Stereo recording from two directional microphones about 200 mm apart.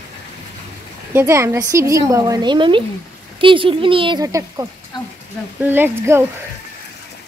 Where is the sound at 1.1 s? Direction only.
15° right (ahead or behind).